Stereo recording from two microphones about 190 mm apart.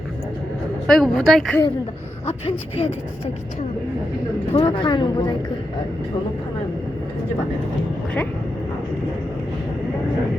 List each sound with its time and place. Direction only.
0.9 s speech: centre (ahead or behind)
2.2 s speech: 30° left (ahead or behind)
4.5 s speech: 25° left (ahead or behind)